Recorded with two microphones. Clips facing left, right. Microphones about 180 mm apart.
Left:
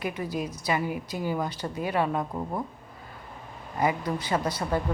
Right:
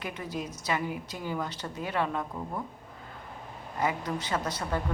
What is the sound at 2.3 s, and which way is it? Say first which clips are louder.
Speech: left 4 dB; 35° left (ahead or behind).